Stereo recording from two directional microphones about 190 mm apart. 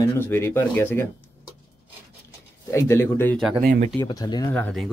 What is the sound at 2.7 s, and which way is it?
Speech, 15° left (ahead or behind).